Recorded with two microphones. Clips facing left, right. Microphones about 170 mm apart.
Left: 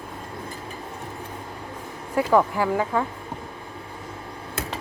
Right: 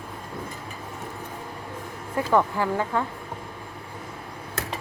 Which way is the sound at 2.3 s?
10° left (ahead or behind).